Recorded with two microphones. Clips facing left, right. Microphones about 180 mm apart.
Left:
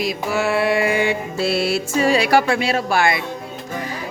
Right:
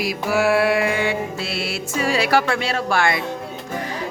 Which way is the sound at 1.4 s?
40° left (ahead or behind).